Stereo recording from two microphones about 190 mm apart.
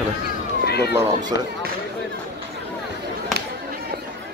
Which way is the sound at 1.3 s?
60° left (ahead or behind).